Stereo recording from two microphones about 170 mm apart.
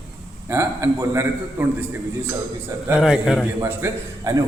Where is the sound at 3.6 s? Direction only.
15° right (ahead or behind).